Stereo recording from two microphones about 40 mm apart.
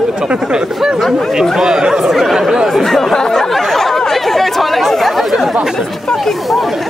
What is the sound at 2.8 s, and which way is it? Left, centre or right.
Speech, centre.